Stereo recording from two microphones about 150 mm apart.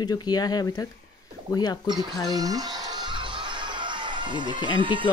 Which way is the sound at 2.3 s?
25° right (ahead or behind).